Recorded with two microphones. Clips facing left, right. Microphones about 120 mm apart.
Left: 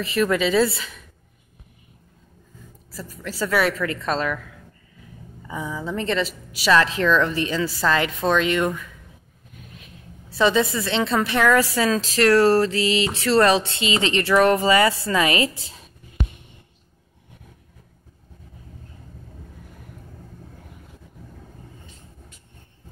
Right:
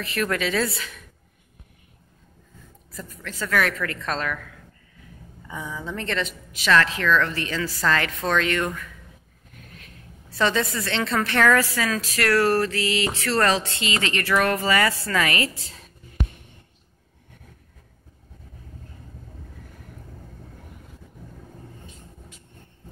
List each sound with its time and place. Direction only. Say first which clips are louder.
0.0 s a woman's voice: left 5 dB; centre (ahead or behind)
2.9 s a woman's voice: left 4 dB; 10° left (ahead or behind)
5.5 s a woman's voice: left 4 dB; centre (ahead or behind)
6.7 s a woman's voice: left 2 dB; 20° left (ahead or behind)
10.3 s a woman's voice: left 4 dB; 10° left (ahead or behind)
11.6 s speech: left 5 dB; 25° left (ahead or behind)